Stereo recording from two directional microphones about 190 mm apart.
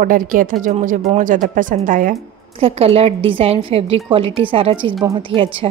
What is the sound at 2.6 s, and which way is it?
A woman's voice, 30° right (ahead or behind).